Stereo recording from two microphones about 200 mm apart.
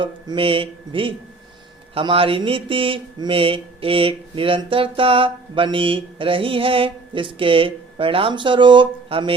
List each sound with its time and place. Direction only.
0.0 s speech: 25° right (ahead or behind)